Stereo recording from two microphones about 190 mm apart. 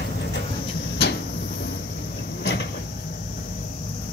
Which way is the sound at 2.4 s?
70° left (ahead or behind).